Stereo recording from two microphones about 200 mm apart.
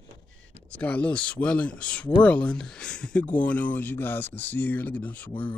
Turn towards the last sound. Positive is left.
turn(degrees=5)  # may be behind; listen again after turning